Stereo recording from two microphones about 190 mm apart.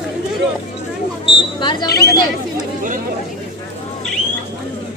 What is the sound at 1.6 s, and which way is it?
Speech, 25° left (ahead or behind).